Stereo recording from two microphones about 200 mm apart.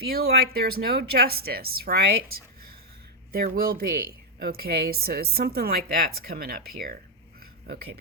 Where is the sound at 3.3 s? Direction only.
45° right (ahead or behind).